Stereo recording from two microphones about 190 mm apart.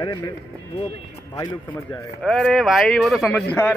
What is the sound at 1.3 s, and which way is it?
Speech, 20° left (ahead or behind).